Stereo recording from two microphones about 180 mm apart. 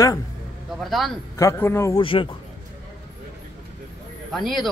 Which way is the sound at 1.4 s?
15° left (ahead or behind).